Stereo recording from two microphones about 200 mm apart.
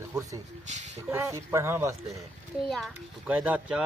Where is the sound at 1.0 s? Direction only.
10° right (ahead or behind).